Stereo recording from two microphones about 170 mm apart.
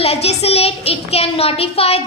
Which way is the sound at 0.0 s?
35° left (ahead or behind).